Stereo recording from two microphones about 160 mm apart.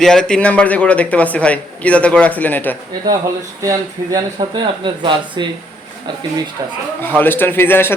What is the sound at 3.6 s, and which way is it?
Speech, 20° right (ahead or behind).